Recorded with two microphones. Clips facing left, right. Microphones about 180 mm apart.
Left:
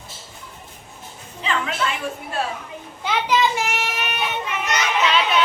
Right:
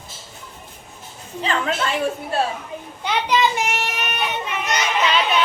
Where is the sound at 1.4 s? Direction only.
35° right (ahead or behind).